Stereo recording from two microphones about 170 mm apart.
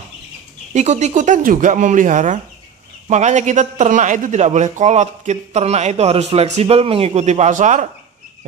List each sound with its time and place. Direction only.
0.7 s a man's voice: 40° right (ahead or behind)